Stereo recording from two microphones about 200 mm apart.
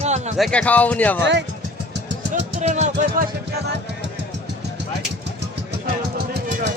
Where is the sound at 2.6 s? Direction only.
35° right (ahead or behind).